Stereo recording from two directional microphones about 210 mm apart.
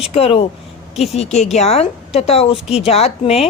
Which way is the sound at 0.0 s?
30° left (ahead or behind).